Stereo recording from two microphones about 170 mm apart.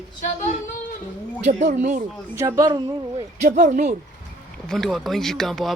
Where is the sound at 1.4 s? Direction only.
40° right (ahead or behind).